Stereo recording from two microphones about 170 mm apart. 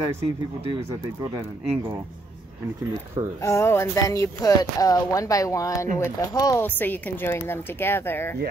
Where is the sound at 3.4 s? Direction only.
15° left (ahead or behind).